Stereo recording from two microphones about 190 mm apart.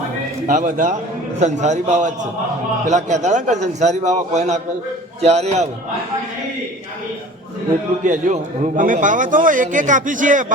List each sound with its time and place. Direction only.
0.4 s a man's voice: 45° right (ahead or behind)
8.0 s a man's voice: 40° right (ahead or behind)